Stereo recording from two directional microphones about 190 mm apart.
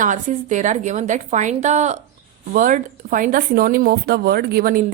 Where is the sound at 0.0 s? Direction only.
40° right (ahead or behind).